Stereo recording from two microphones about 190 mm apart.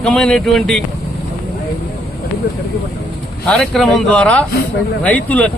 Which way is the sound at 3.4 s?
5° left (ahead or behind).